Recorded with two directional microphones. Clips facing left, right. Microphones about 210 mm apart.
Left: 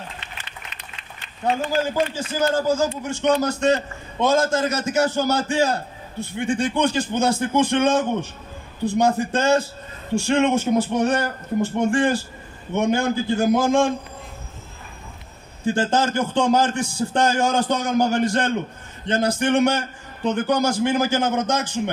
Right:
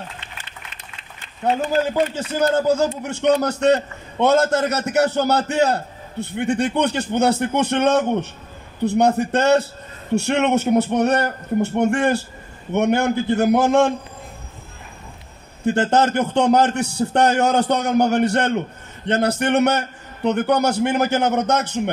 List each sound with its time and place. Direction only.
2.5 s a man's voice: 65° right (ahead or behind)
15.6 s a man's voice: 65° right (ahead or behind)